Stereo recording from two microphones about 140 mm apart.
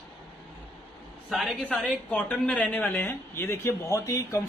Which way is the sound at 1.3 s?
Centre (ahead or behind).